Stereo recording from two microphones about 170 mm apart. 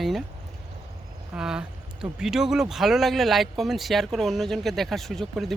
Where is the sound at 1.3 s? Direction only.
5° right (ahead or behind).